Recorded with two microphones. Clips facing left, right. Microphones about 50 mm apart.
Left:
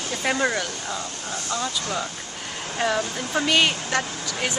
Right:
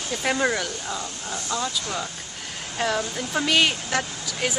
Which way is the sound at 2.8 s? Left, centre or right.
Centre.